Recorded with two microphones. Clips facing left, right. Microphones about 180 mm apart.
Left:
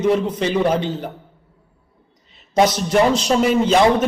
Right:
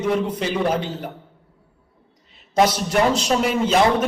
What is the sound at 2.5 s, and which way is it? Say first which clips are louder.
Speech: left 2 dB; 5° right (ahead or behind).